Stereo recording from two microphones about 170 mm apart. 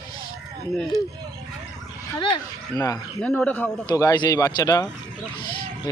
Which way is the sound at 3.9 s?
20° left (ahead or behind).